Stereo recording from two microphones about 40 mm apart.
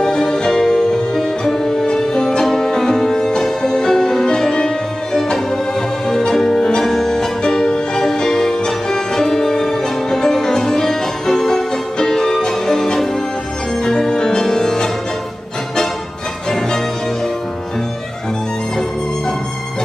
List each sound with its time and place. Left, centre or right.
0.0 s music: centre